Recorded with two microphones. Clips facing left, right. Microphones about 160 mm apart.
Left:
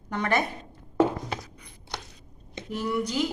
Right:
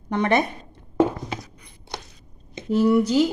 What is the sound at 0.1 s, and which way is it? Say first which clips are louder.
Speech: right 6 dB; 20° right (ahead or behind).